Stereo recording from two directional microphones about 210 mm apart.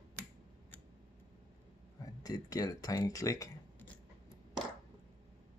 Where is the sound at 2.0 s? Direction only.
15° left (ahead or behind).